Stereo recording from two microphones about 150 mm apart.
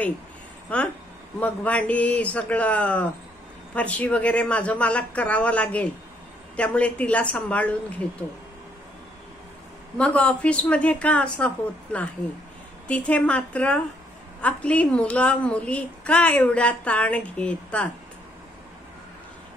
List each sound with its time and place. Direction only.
0.7 s a woman's voice: 10° left (ahead or behind)
9.9 s a woman's voice: 10° left (ahead or behind)